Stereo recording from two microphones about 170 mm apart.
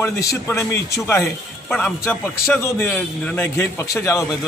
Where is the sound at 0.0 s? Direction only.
15° left (ahead or behind).